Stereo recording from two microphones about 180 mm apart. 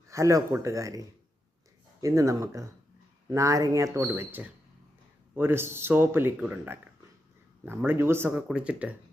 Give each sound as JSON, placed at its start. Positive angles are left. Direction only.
{"t": 0.1, "sound": "speech", "side_deg": -15}